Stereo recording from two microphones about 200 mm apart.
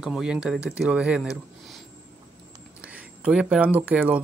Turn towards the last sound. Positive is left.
turn(degrees=-5)  # may be behind; listen again after turning